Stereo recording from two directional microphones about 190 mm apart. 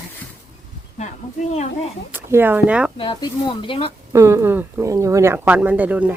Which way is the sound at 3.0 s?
25° left (ahead or behind).